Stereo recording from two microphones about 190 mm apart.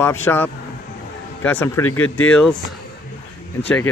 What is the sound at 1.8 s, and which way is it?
Speech, 90° left.